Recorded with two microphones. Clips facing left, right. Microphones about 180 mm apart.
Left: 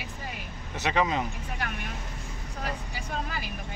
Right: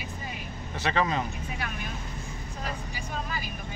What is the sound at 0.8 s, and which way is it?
Speech, 15° left (ahead or behind).